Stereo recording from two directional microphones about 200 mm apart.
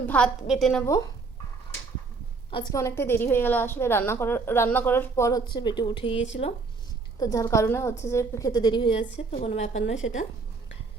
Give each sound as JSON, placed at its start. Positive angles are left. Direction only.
{"t": 0.1, "sound": "a woman's voice", "side_deg": 0}
{"t": 0.9, "sound": "a woman's voice", "side_deg": 15}
{"t": 2.5, "sound": "a woman's voice", "side_deg": 25}
{"t": 2.8, "sound": "a woman's voice", "side_deg": 10}
{"t": 6.3, "sound": "speech", "side_deg": 45}
{"t": 7.2, "sound": "a woman's voice", "side_deg": 15}